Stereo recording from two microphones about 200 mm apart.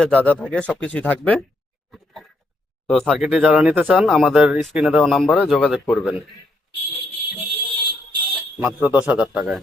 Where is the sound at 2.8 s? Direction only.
5° left (ahead or behind).